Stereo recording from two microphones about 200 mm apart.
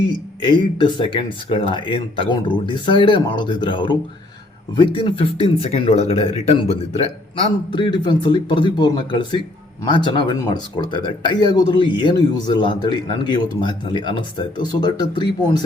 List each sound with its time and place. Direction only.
0.4 s speech: 25° left (ahead or behind)